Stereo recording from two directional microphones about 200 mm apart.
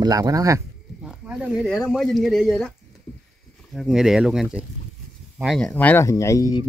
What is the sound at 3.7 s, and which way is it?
A man's voice, centre (ahead or behind).